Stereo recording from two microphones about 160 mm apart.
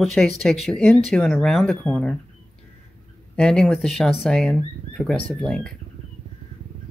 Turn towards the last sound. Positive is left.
turn(degrees=5)  # may be behind; listen again after turning